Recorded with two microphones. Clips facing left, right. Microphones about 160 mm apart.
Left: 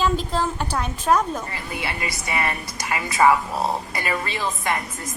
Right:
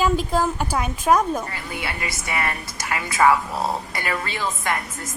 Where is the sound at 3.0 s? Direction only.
Centre (ahead or behind).